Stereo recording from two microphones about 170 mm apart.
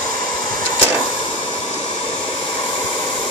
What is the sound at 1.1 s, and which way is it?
Hair dryer, 35° left (ahead or behind).